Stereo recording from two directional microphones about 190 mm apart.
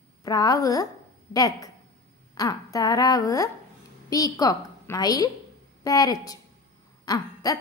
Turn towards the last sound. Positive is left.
turn(degrees=20)  # may be behind; listen again after turning